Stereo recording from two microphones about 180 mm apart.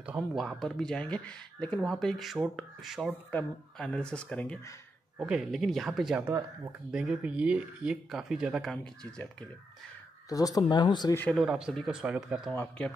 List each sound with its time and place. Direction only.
0.0 s speech: 5° right (ahead or behind)
5.2 s speech: 5° right (ahead or behind)
10.3 s speech: 20° left (ahead or behind)
11.1 s speech: 5° left (ahead or behind)